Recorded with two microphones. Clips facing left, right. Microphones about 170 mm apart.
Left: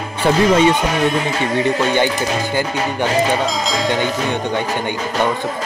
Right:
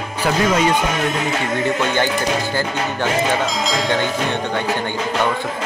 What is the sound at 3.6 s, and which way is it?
Speech, centre (ahead or behind).